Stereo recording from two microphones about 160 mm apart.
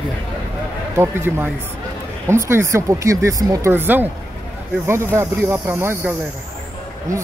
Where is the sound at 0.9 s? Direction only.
15° right (ahead or behind).